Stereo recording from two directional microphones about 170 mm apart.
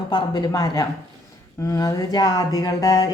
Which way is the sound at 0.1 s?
25° left (ahead or behind).